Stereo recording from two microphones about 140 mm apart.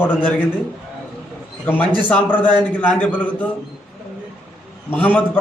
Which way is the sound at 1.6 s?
10° left (ahead or behind).